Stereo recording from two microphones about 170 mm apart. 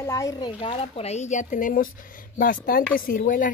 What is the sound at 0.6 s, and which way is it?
Speech, 35° left (ahead or behind).